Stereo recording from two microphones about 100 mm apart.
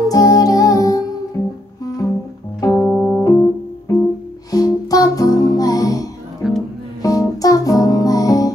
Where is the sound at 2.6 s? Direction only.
35° left (ahead or behind).